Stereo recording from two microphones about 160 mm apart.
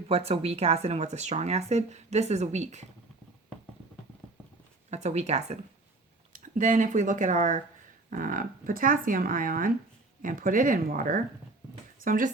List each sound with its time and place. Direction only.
0.1 s speech: 40° right (ahead or behind)
4.9 s speech: 45° right (ahead or behind)